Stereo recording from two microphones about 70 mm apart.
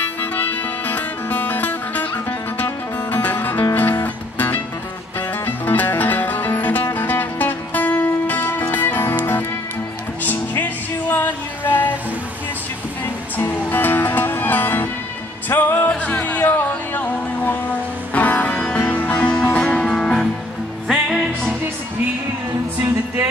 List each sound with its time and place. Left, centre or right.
0.2 s music: left
13.0 s music: left; by 20.2 s centre